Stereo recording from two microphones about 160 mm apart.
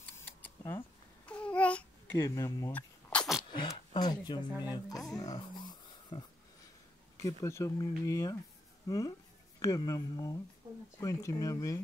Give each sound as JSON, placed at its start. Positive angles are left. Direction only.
{"t": 0.2, "sound": "babbling", "side_deg": 15}
{"t": 2.2, "sound": "speech", "side_deg": 20}
{"t": 3.1, "sound": "a sound", "side_deg": 0}
{"t": 3.5, "sound": "speech", "side_deg": 30}
{"t": 5.1, "sound": "a sound", "side_deg": 25}
{"t": 7.2, "sound": "speech", "side_deg": 20}